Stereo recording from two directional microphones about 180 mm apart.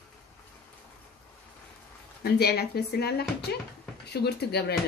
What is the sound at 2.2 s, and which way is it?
Speech, 60° left (ahead or behind).